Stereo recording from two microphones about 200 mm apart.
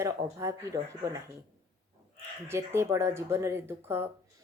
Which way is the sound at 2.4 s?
15° right (ahead or behind).